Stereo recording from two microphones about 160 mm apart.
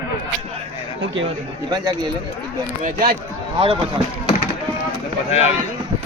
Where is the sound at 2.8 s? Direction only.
60° right (ahead or behind).